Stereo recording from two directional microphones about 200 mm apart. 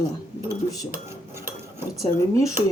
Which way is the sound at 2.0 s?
15° left (ahead or behind).